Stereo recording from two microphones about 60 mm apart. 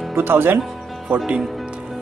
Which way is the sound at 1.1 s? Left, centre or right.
Centre.